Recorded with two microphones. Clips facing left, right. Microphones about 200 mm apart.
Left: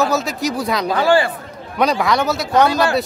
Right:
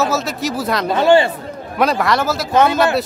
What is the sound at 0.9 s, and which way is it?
Speech, 20° right (ahead or behind).